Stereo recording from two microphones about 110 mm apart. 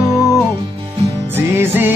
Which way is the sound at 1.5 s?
20° right (ahead or behind).